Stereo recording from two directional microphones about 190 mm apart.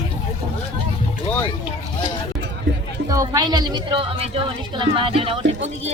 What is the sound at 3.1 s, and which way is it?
A woman's voice, 20° right (ahead or behind).